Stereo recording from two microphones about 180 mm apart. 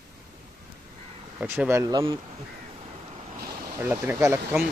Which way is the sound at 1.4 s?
10° right (ahead or behind).